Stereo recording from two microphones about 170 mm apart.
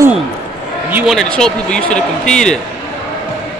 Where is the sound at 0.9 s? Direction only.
Centre (ahead or behind).